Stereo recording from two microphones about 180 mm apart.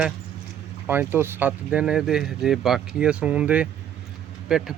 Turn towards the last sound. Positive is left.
turn(degrees=-5)  # may be behind; listen again after turning